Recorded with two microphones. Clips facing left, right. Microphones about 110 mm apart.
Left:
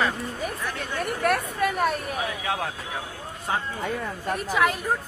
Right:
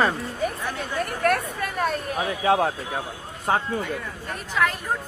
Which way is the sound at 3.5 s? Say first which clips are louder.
Right 5 dB; 55° right (ahead or behind).